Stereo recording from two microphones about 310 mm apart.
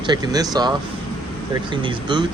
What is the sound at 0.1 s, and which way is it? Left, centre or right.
Speech, centre.